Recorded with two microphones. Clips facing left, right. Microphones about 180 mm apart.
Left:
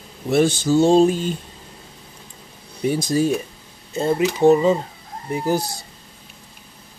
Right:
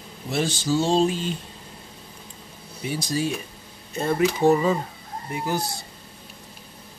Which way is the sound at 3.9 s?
20° left (ahead or behind).